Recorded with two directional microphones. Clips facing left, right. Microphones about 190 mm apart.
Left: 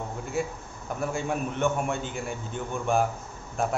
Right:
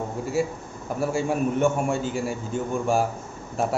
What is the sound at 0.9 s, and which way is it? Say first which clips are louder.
Speech: right 5 dB; 5° right (ahead or behind).